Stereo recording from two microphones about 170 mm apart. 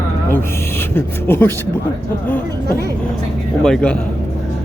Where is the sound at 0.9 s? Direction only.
15° left (ahead or behind).